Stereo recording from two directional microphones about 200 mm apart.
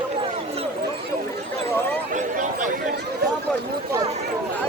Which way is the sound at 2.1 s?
40° right (ahead or behind).